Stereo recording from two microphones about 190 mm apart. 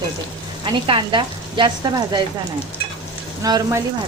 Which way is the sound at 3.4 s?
20° right (ahead or behind).